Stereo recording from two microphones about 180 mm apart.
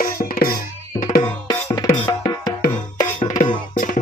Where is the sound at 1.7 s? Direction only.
20° left (ahead or behind).